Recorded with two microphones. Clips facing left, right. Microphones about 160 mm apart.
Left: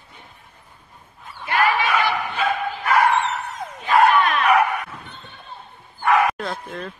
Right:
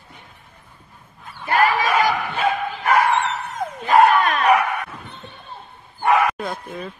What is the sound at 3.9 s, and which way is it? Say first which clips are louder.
Battle cry: right 2 dB; 40° right (ahead or behind).